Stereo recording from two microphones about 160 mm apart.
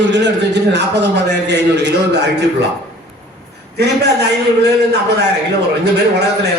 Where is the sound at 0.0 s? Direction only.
90° right.